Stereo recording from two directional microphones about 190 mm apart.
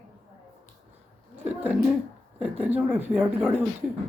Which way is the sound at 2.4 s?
10° right (ahead or behind).